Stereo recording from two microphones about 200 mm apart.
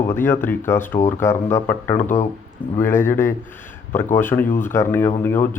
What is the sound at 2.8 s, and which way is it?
Speech, 10° left (ahead or behind).